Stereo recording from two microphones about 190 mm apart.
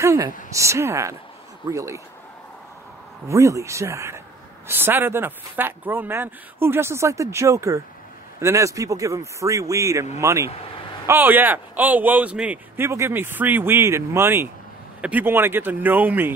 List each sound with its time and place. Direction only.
0.0 s a man's voice: 15° right (ahead or behind)
3.3 s a man's voice: 15° right (ahead or behind)